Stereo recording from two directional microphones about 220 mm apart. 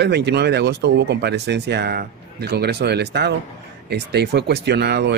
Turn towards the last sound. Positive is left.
turn(degrees=-50)  # may be behind; listen again after turning